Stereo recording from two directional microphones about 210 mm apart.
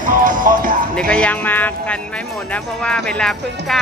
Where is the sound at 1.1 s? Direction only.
5° left (ahead or behind).